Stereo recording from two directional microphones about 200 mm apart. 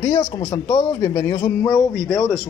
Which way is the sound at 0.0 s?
20° left (ahead or behind).